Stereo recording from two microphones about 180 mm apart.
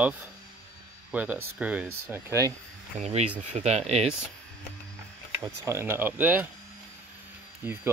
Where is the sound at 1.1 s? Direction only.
10° right (ahead or behind).